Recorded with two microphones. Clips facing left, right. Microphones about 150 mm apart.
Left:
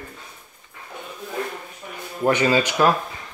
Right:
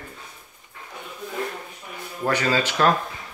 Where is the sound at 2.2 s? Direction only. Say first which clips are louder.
Left 4 dB; 20° left (ahead or behind).